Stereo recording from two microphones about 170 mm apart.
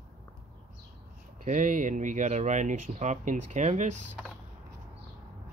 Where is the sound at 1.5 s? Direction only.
50° right (ahead or behind).